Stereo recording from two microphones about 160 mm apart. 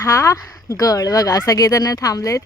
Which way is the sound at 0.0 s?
15° left (ahead or behind).